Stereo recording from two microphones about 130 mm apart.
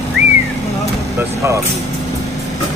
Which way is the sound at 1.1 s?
20° right (ahead or behind).